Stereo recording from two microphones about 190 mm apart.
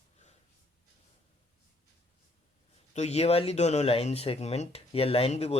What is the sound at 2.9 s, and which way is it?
Speech, 35° left (ahead or behind).